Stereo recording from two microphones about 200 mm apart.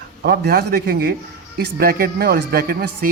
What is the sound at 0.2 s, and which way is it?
Speech, 55° right (ahead or behind).